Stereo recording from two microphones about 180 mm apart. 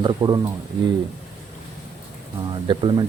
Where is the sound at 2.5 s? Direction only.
25° right (ahead or behind).